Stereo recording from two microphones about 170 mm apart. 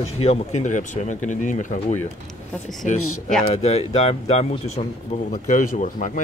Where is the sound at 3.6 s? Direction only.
40° left (ahead or behind).